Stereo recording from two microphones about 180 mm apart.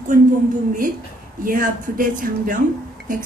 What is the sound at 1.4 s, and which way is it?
A woman's voice, 50° right (ahead or behind).